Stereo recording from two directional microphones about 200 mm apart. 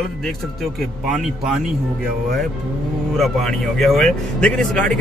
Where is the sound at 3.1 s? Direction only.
Centre (ahead or behind).